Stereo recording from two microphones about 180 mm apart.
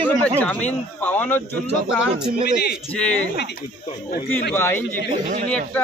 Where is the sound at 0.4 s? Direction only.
10° left (ahead or behind).